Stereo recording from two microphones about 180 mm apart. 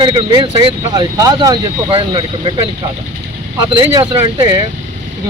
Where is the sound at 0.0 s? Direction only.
25° right (ahead or behind).